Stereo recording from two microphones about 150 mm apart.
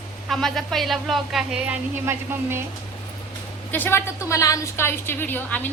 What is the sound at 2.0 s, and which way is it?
Speech, 15° right (ahead or behind).